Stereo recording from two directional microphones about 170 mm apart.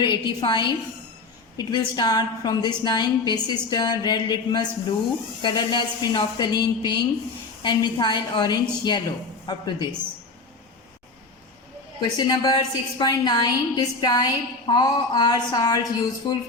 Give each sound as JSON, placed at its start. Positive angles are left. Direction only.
{"t": 0.0, "sound": "a woman's voice", "side_deg": 25}
{"t": 11.9, "sound": "a woman's voice", "side_deg": 25}